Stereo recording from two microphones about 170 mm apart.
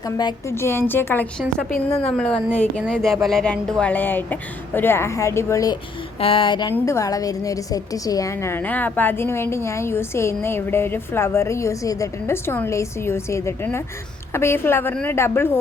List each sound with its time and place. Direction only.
0.2 s a woman's voice: 25° left (ahead or behind)
0.5 s a woman's voice: 15° left (ahead or behind)
6.1 s a sound: 30° left (ahead or behind)
6.7 s a woman's voice: 15° left (ahead or behind)